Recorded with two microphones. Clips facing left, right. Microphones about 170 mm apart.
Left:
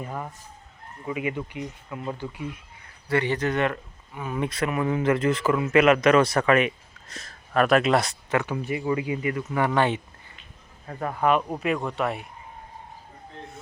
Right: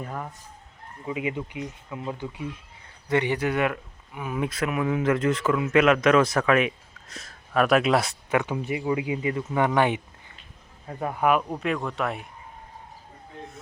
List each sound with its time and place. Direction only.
0.0 s speech: 5° left (ahead or behind)
1.0 s speech: 20° right (ahead or behind)
8.4 s speech: 20° right (ahead or behind)
11.4 s speech: 5° left (ahead or behind)